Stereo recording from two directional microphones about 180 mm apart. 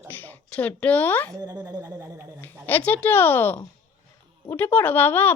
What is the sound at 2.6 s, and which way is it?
Speech, 10° left (ahead or behind).